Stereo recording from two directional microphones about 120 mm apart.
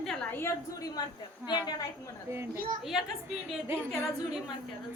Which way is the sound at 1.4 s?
35° left (ahead or behind).